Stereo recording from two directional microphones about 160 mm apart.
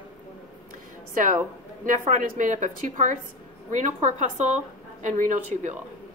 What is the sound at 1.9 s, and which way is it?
A woman's voice, 55° right (ahead or behind).